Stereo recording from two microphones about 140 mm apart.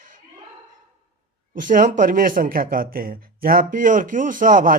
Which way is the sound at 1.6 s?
70° right (ahead or behind).